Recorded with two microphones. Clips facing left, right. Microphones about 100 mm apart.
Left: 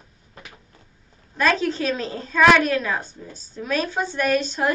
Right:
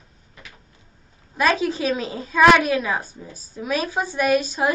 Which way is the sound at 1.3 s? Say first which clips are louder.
Right 1 dB; 10° right (ahead or behind).